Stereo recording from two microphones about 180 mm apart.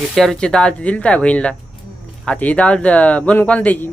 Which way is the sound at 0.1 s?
Centre (ahead or behind).